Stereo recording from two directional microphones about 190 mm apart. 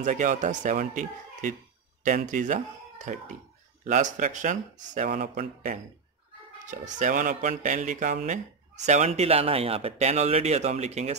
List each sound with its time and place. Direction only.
0.0 s speech: 40° right (ahead or behind)